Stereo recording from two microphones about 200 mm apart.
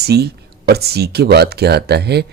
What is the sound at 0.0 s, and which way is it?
Speech, 55° right (ahead or behind).